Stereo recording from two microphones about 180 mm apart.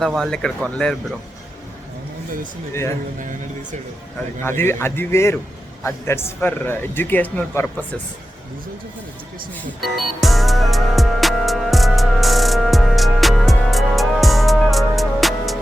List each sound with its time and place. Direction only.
0.0 s speech: centre (ahead or behind)
3.2 s speech: 45° right (ahead or behind)
4.4 s speech: 15° left (ahead or behind)
9.8 s music: centre (ahead or behind)